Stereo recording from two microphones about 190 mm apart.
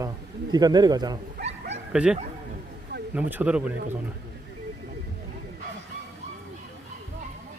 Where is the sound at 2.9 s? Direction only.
60° right (ahead or behind).